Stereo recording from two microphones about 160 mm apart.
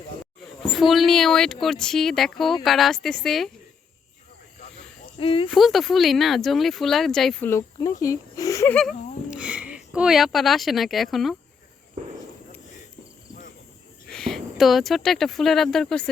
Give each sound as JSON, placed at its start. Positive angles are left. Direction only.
{"t": 0.6, "sound": "speech", "side_deg": 0}
{"t": 5.1, "sound": "speech", "side_deg": 35}
{"t": 5.5, "sound": "speech", "side_deg": 0}
{"t": 8.0, "sound": "speech", "side_deg": 20}
{"t": 8.7, "sound": "speech", "side_deg": 0}
{"t": 14.1, "sound": "speech", "side_deg": 5}